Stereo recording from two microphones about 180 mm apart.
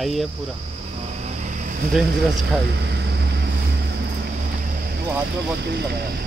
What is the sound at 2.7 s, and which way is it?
Vehicle, 70° right (ahead or behind).